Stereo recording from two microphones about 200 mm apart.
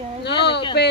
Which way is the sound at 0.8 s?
55° left (ahead or behind).